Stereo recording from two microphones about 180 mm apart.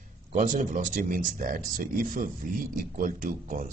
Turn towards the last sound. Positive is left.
turn(degrees=-50)  # may be behind; listen again after turning